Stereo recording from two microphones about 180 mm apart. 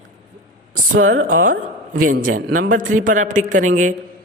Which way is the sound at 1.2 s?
50° right (ahead or behind).